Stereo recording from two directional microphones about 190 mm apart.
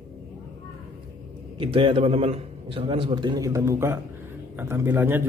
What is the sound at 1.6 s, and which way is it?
A man's voice, 30° right (ahead or behind).